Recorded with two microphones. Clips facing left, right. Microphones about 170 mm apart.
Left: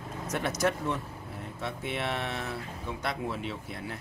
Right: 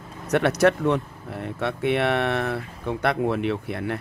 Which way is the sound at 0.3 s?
65° right (ahead or behind).